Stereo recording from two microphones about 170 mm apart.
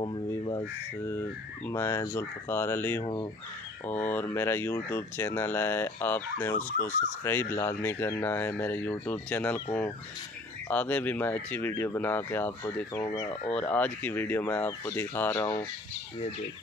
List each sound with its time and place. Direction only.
0.3 s speech: 20° left (ahead or behind)
13.5 s speech: 5° left (ahead or behind)